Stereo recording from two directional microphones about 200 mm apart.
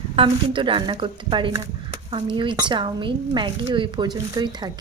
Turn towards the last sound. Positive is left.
turn(degrees=-20)  # may be behind; listen again after turning